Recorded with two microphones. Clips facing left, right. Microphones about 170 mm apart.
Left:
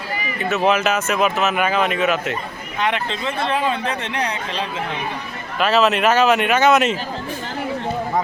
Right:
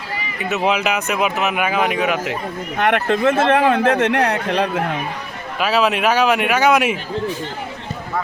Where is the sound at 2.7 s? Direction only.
55° right (ahead or behind).